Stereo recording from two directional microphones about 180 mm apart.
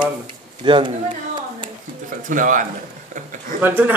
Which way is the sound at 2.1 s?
45° right (ahead or behind).